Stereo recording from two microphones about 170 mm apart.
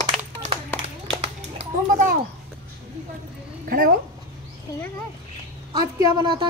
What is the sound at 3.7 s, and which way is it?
Speech, 60° right (ahead or behind).